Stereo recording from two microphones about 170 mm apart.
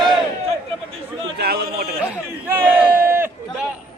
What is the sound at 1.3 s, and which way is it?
Speech, 70° right (ahead or behind).